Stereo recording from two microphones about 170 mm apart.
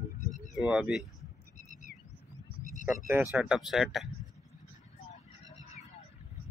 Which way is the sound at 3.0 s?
15° right (ahead or behind).